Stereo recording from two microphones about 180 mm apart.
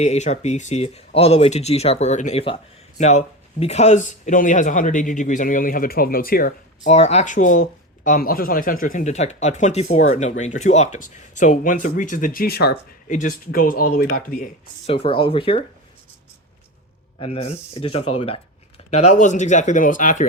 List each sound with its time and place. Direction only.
0.0 s speech: 40° left (ahead or behind); by 6.9 s 55° left (ahead or behind)
6.9 s speech: 40° left (ahead or behind)
14.8 s speech: 30° left (ahead or behind)
17.2 s speech: 35° left (ahead or behind)